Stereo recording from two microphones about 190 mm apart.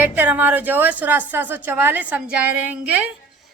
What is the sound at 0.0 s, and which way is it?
A woman's voice, 10° right (ahead or behind).